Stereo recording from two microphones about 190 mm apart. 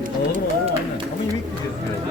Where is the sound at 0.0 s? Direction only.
40° right (ahead or behind).